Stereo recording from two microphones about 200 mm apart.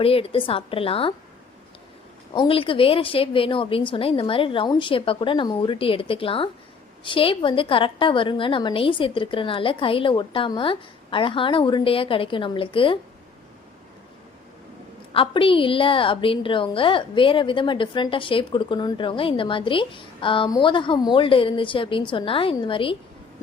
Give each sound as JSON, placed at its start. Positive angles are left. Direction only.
{"t": 0.0, "sound": "a woman's voice", "side_deg": 30}
{"t": 2.3, "sound": "a woman's voice", "side_deg": 25}
{"t": 15.1, "sound": "a woman's voice", "side_deg": 25}